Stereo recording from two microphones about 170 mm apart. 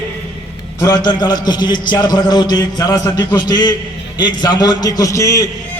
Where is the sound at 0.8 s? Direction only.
25° left (ahead or behind).